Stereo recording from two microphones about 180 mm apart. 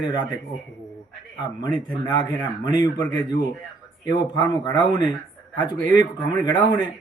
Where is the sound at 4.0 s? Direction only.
25° left (ahead or behind).